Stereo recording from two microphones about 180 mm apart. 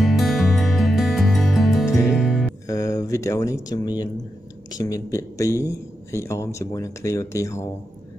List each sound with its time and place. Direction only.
0.0 s music: centre (ahead or behind)
2.6 s a man's voice: 20° left (ahead or behind)